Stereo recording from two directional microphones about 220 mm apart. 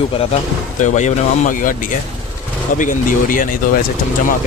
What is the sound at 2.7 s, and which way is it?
Speech, 35° left (ahead or behind).